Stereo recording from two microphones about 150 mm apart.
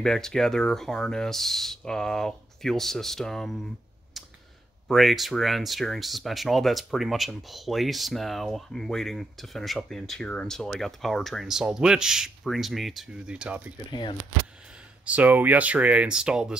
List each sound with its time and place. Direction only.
0.0 s speech: 5° left (ahead or behind)
4.8 s speech: centre (ahead or behind)
13.8 s speech: 30° left (ahead or behind)
15.0 s speech: 10° right (ahead or behind)